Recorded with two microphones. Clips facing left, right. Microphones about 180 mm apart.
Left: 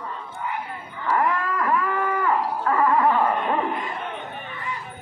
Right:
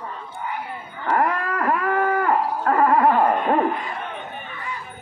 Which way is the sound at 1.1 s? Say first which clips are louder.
Right 1 dB; 45° right (ahead or behind).